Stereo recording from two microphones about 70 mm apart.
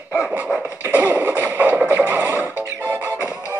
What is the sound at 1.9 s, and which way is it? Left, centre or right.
Music, right.